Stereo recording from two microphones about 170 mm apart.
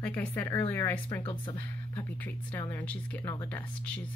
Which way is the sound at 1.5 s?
10° left (ahead or behind).